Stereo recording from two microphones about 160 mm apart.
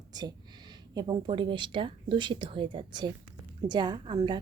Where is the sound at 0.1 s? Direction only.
25° right (ahead or behind).